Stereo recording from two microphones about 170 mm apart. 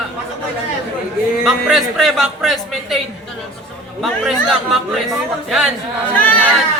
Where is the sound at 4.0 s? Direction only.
Centre (ahead or behind).